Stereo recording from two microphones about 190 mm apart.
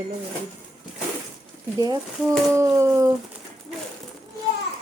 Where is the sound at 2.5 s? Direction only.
15° right (ahead or behind).